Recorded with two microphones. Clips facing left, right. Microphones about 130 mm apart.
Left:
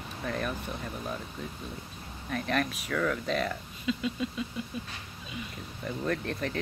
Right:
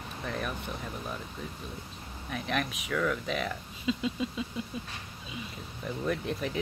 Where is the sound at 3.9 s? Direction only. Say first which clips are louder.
Even; 25° right (ahead or behind).